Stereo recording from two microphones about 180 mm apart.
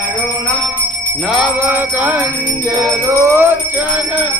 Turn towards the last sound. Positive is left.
turn(degrees=-15)  # may be behind; listen again after turning